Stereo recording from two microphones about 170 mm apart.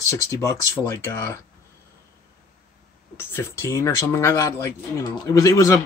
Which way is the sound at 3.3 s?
15° left (ahead or behind).